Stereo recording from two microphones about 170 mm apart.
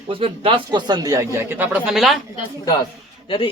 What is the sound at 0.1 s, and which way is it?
Speech, 30° right (ahead or behind).